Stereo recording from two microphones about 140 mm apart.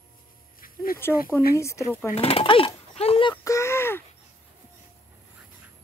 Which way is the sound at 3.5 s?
20° left (ahead or behind).